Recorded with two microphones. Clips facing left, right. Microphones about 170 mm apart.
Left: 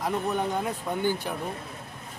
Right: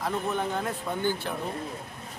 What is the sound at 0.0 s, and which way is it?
A man's voice, 15° left (ahead or behind).